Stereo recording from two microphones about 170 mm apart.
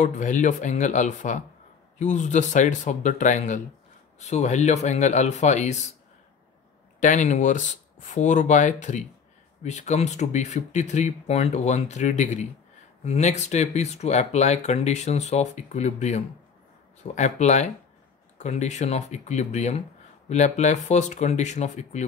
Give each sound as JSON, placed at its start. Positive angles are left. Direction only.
{"t": 0.0, "sound": "speech", "side_deg": 45}
{"t": 7.0, "sound": "speech", "side_deg": 45}